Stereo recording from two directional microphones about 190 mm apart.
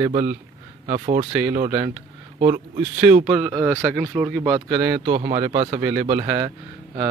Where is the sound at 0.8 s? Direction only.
30° right (ahead or behind).